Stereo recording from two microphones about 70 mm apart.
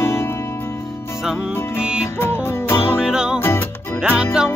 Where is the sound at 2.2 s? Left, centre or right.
Left.